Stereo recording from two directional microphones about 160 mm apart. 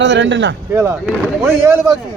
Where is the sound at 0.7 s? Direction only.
15° right (ahead or behind).